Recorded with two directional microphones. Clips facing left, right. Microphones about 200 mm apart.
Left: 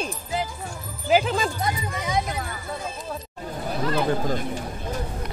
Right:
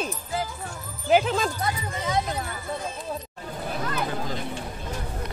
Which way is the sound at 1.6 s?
15° left (ahead or behind).